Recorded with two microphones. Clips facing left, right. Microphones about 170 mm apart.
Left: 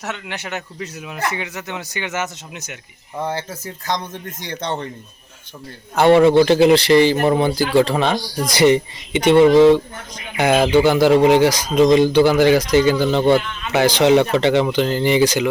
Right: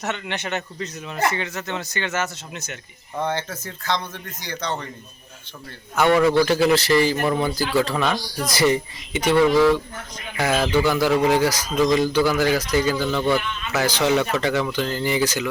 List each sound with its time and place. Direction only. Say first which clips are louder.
0.0 s speech: right 1 dB; 10° left (ahead or behind)
5.9 s speech: left 6 dB; 30° left (ahead or behind)
7.2 s speech: left 5 dB; 30° left (ahead or behind)